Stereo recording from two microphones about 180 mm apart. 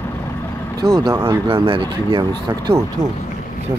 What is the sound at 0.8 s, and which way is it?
Speech, 20° right (ahead or behind).